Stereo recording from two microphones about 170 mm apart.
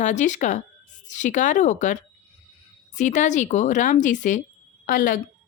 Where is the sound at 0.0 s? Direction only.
45° left (ahead or behind).